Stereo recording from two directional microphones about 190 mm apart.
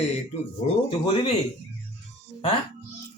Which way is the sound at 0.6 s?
35° left (ahead or behind).